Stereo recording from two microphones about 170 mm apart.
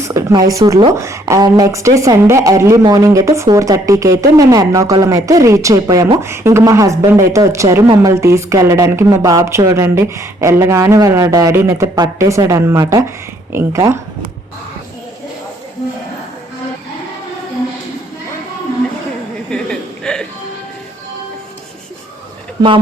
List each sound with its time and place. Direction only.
0.0 s speech: 15° right (ahead or behind)
19.5 s chuckle: 5° left (ahead or behind)